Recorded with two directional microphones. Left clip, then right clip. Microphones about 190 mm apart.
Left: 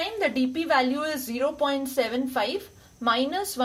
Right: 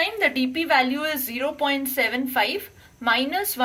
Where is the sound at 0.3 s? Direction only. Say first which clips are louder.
Right 1 dB; 40° left (ahead or behind).